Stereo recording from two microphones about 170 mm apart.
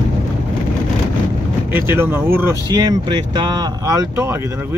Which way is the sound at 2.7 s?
25° right (ahead or behind).